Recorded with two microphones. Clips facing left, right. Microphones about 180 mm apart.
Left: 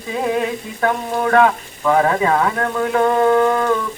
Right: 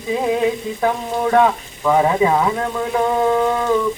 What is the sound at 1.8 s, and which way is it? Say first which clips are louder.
Speech: right 1 dB; 10° right (ahead or behind).